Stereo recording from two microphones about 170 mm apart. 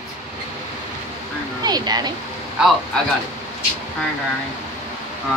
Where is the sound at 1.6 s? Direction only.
25° right (ahead or behind).